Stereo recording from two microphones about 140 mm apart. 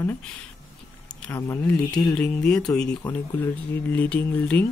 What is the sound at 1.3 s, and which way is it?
Speech, 15° left (ahead or behind).